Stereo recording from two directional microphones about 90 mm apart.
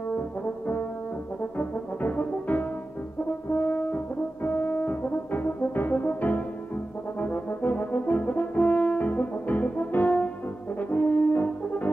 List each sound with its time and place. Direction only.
1.4 s brass instrument: 20° left (ahead or behind)